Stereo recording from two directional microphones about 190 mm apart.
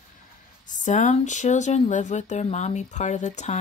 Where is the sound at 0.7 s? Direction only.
40° left (ahead or behind).